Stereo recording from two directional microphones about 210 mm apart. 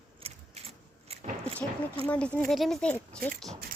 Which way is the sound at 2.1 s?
5° left (ahead or behind).